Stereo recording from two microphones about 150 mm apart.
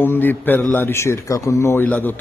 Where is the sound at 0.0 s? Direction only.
15° left (ahead or behind).